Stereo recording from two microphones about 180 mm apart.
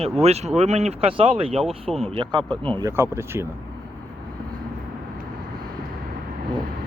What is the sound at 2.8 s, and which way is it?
Speech, 15° right (ahead or behind).